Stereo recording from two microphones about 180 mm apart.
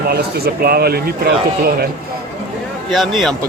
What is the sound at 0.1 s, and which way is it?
Speech, 60° right (ahead or behind).